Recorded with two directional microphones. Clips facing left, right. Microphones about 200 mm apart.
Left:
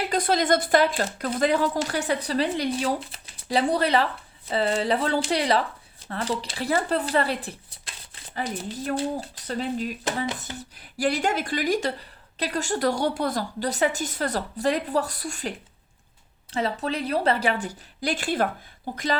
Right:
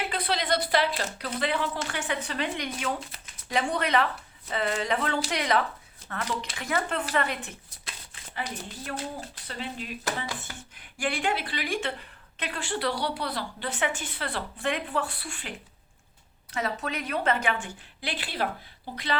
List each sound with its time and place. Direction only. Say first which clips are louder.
0.0 s speech: left 7 dB; 45° left (ahead or behind)
16.5 s speech: left 4 dB; 30° left (ahead or behind); by 19.0 s 50° left (ahead or behind)